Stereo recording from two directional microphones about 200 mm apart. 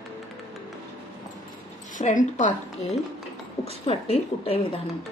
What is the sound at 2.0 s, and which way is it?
A woman's voice, 40° left (ahead or behind).